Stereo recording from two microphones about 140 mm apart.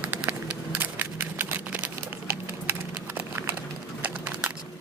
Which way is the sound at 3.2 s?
15° right (ahead or behind).